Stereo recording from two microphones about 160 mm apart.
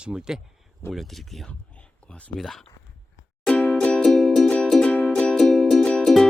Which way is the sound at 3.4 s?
5° left (ahead or behind).